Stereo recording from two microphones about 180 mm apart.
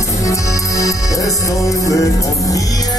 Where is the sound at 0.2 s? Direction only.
20° left (ahead or behind).